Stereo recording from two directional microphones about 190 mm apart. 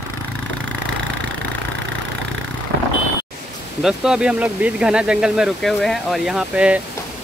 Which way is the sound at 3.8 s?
5° right (ahead or behind).